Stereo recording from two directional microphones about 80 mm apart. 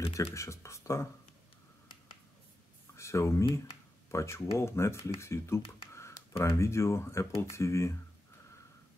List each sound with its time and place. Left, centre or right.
0.0 s speech: left
3.0 s speech: left